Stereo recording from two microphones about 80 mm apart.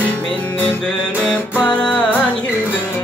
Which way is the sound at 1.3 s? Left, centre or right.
Centre.